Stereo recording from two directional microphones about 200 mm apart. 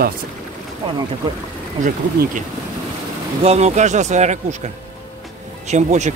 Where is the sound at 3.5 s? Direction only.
35° right (ahead or behind).